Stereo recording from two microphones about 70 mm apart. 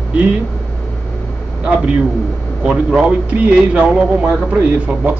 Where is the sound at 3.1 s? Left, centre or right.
Centre.